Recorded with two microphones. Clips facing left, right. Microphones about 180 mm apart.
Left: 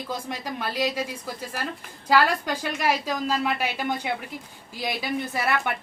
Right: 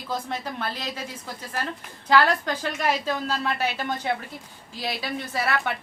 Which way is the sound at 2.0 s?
10° left (ahead or behind).